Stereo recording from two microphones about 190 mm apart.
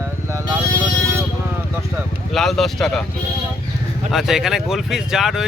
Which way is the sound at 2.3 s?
Centre (ahead or behind).